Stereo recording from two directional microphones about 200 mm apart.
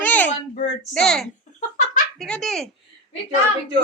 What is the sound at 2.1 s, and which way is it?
Speech, 5° left (ahead or behind).